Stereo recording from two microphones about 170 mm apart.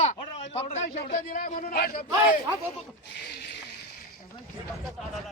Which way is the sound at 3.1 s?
80° left.